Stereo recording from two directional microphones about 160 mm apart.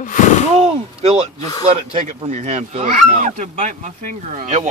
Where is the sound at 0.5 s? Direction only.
40° right (ahead or behind).